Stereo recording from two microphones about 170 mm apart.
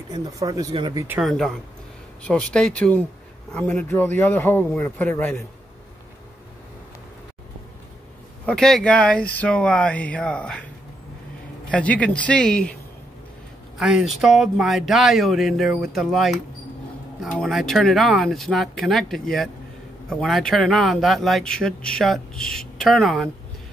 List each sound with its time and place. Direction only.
0.1 s speech: 20° right (ahead or behind)
1.0 s speech: 10° right (ahead or behind)
1.3 s speech: centre (ahead or behind)
8.5 s speech: 5° left (ahead or behind)
11.7 s speech: 10° left (ahead or behind)
13.7 s speech: 5° right (ahead or behind)